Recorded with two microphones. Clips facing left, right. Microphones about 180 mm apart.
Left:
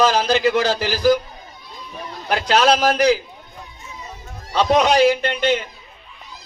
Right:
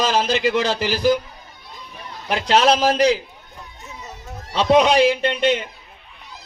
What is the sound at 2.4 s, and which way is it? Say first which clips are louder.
Speech: even; 30° right (ahead or behind).